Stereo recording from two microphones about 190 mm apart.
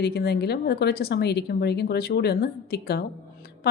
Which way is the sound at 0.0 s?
55° left (ahead or behind).